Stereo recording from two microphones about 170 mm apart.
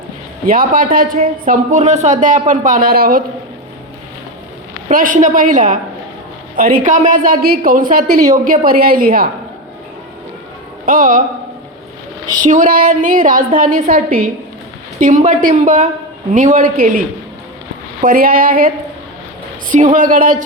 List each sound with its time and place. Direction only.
0.4 s speech: 55° right (ahead or behind)
4.9 s speech: 50° right (ahead or behind)
6.8 s a woman's voice: 50° right (ahead or behind)
10.8 s speech: 55° right (ahead or behind)
12.4 s speech: 50° right (ahead or behind)
18.0 s a woman's voice: 55° right (ahead or behind)